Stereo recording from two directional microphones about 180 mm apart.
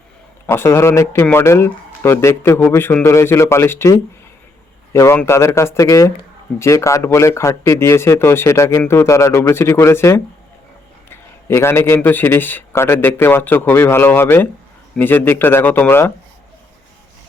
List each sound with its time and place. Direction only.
0.4 s speech: 15° left (ahead or behind)
4.9 s speech: 15° left (ahead or behind)